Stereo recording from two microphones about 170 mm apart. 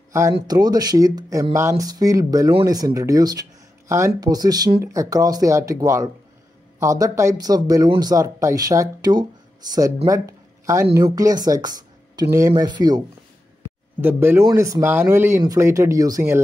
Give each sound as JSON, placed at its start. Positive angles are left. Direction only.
{"t": 0.1, "sound": "speech", "side_deg": -20}
{"t": 14.0, "sound": "speech", "side_deg": -15}